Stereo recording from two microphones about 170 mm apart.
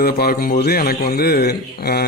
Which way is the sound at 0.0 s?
60° left (ahead or behind).